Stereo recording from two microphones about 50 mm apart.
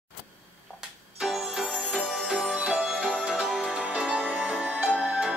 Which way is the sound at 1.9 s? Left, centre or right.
Centre.